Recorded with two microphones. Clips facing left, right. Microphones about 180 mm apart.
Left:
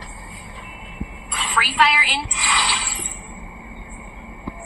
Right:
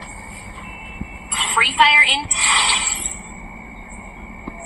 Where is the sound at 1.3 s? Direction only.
20° right (ahead or behind).